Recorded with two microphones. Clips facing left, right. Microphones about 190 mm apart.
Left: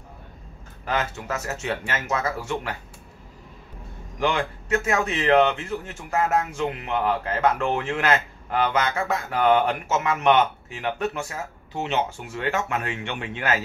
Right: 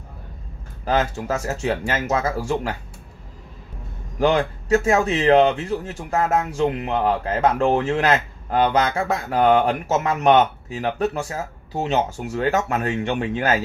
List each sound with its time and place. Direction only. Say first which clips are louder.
0.8 s speech: right 6 dB; 35° right (ahead or behind)
4.2 s speech: right 6 dB; 35° right (ahead or behind)